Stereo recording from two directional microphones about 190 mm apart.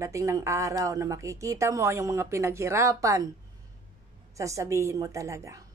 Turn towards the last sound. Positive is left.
turn(degrees=-15)  # may be behind; listen again after turning